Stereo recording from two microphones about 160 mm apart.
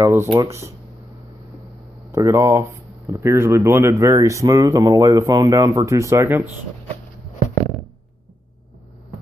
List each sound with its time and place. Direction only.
0.0 s speech: 15° right (ahead or behind)
2.1 s speech: 15° right (ahead or behind)